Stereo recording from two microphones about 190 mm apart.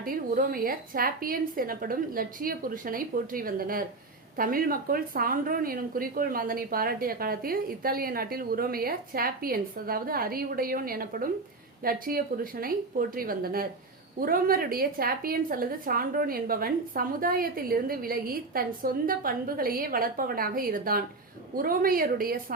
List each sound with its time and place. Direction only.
0.0 s speech: 50° right (ahead or behind)